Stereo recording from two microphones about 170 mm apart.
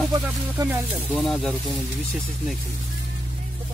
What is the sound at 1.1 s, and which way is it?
Speech, 5° left (ahead or behind).